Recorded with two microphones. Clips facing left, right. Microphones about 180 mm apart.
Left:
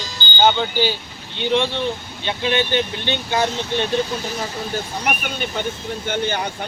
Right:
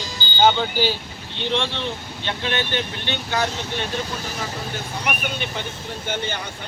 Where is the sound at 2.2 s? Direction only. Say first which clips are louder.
Left 5 dB; 15° left (ahead or behind).